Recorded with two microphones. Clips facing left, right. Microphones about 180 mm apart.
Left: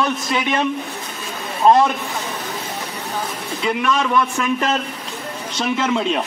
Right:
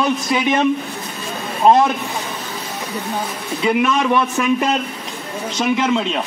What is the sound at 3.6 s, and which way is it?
A man's voice, 15° right (ahead or behind).